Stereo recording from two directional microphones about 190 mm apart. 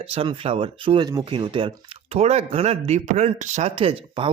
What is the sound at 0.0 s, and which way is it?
Speech, 30° right (ahead or behind).